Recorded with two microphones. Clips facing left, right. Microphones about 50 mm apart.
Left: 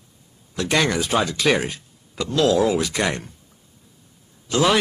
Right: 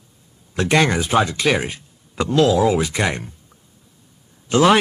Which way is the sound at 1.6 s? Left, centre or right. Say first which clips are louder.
Right 1 dB; right.